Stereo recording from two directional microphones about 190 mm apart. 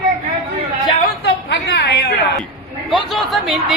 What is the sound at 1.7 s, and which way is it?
Speech, 60° left (ahead or behind).